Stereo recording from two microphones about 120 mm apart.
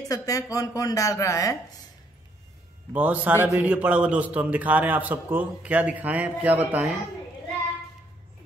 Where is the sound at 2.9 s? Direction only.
10° right (ahead or behind).